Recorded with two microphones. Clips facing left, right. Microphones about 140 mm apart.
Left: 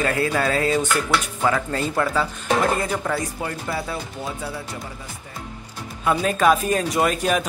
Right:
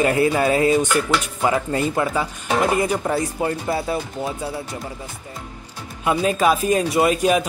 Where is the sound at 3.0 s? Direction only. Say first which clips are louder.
Right 4 dB; 25° right (ahead or behind).